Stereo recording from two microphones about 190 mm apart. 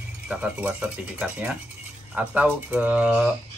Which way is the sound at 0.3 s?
5° right (ahead or behind).